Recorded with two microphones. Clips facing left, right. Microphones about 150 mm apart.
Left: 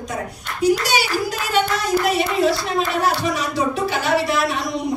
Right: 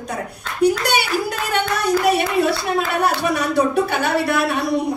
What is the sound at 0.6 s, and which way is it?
Clapping, 55° right (ahead or behind).